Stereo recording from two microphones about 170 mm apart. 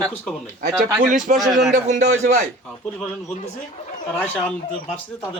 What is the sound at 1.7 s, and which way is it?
Speech, 45° right (ahead or behind).